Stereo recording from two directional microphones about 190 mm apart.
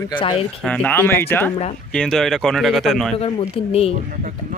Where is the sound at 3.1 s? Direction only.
30° left (ahead or behind).